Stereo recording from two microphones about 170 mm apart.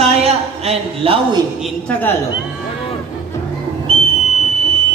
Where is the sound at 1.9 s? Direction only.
10° left (ahead or behind).